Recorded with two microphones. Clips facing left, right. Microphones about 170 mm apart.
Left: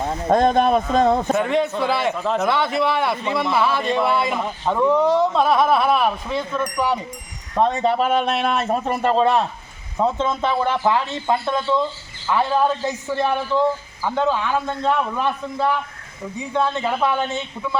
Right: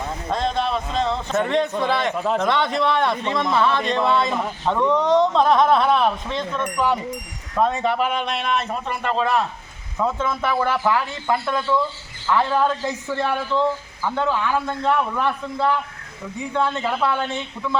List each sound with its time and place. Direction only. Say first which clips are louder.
0.3 s speech: left 7 dB; 50° left (ahead or behind)
1.4 s a man's voice: left 1 dB; 5° left (ahead or behind)
2.1 s a man's voice: even; 5° right (ahead or behind)
2.4 s a man's voice: left 2 dB; 5° left (ahead or behind)
7.5 s a man's voice: left 2 dB; 30° left (ahead or behind); by 17.7 s 15° left (ahead or behind)